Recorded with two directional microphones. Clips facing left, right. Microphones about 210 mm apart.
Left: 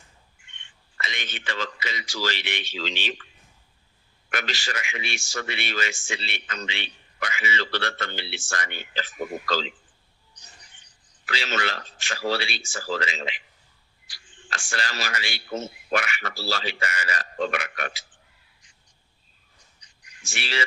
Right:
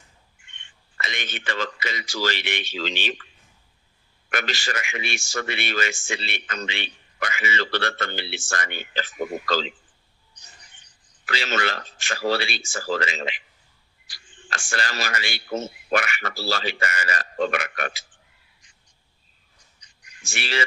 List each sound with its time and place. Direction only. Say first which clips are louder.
0.9 s speech: right 2 dB; 50° right (ahead or behind)
4.3 s speech: right 3 dB; 50° right (ahead or behind)
11.3 s speech: right 3 dB; 50° right (ahead or behind)
20.2 s speech: right 3 dB; 50° right (ahead or behind)